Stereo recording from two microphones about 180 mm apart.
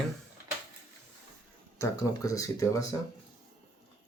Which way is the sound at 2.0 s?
20° left (ahead or behind).